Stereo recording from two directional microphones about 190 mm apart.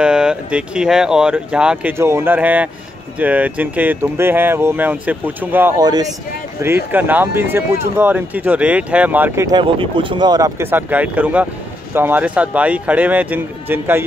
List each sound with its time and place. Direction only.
0.0 s speech: 5° right (ahead or behind)
9.6 s speech: 25° right (ahead or behind); by 14.0 s 10° right (ahead or behind)